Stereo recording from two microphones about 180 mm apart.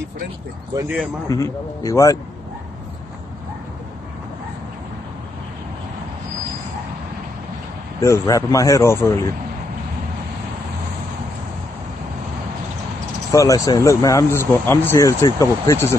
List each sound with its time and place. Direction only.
0.8 s speech: 10° right (ahead or behind)
1.3 s speech: 15° left (ahead or behind)
8.0 s speech: 15° left (ahead or behind)
13.3 s speech: 20° left (ahead or behind)